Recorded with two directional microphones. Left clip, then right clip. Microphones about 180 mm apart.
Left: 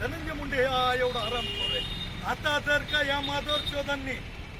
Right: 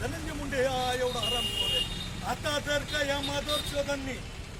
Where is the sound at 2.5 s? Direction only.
15° right (ahead or behind).